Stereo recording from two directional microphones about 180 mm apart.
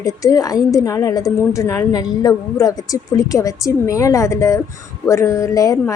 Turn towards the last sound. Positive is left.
turn(degrees=15)  # may be behind; listen again after turning